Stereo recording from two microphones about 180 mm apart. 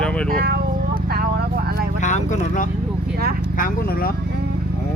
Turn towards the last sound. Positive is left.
turn(degrees=50)  # may be behind; listen again after turning